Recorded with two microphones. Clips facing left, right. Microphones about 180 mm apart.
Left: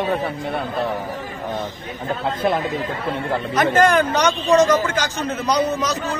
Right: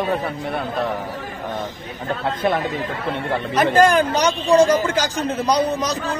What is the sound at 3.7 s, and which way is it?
Speech, 35° right (ahead or behind).